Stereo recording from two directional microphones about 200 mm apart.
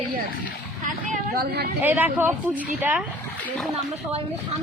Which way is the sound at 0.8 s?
45° right (ahead or behind).